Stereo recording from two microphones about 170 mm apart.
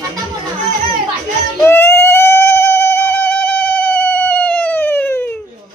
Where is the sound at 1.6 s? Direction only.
15° left (ahead or behind).